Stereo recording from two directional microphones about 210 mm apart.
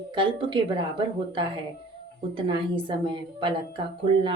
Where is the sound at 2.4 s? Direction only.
25° right (ahead or behind).